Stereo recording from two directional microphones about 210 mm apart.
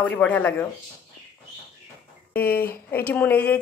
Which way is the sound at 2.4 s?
45° left (ahead or behind).